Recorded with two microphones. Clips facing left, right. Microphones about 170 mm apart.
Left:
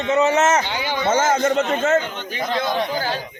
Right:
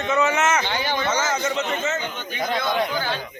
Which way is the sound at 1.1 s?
50° left (ahead or behind).